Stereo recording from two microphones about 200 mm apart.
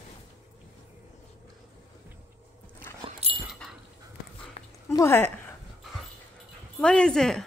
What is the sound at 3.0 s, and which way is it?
Dog, 30° right (ahead or behind).